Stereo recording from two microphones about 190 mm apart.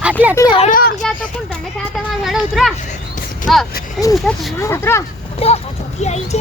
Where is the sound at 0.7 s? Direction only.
50° left (ahead or behind).